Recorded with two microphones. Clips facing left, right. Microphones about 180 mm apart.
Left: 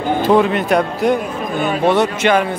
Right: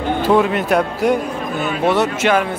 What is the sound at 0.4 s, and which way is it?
Speech, 5° right (ahead or behind).